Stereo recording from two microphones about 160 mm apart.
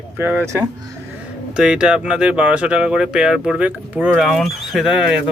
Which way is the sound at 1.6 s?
5° right (ahead or behind).